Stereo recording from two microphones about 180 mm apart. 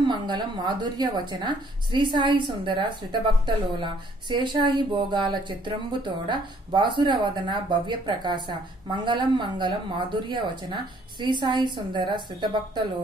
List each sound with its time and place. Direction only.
0.0 s speech: 25° right (ahead or behind)